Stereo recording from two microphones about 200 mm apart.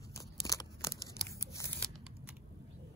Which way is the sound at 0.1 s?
15° left (ahead or behind).